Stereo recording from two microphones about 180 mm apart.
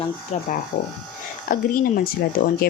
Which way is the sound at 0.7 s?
55° left (ahead or behind).